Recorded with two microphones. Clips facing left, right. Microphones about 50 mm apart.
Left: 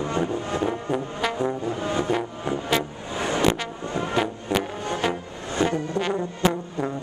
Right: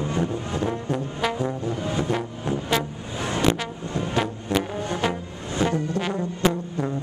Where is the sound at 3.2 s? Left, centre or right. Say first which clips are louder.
Left 1 dB; centre.